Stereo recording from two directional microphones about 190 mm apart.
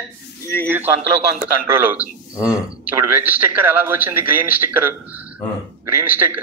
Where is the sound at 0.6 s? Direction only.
10° right (ahead or behind).